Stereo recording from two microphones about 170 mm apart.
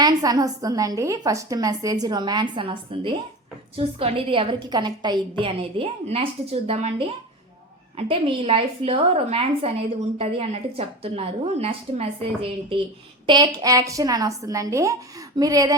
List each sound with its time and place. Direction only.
0.0 s a woman's voice: 20° right (ahead or behind)